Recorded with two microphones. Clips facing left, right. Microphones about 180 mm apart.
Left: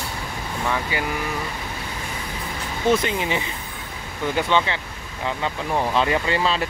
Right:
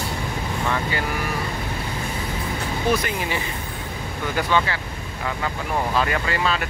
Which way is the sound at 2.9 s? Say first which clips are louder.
Left 2 dB; 25° left (ahead or behind).